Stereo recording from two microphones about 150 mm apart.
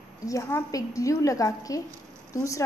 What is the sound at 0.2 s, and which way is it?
Speech, 20° left (ahead or behind).